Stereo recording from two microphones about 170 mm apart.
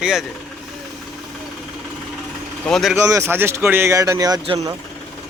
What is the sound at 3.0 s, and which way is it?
Speech, 15° right (ahead or behind).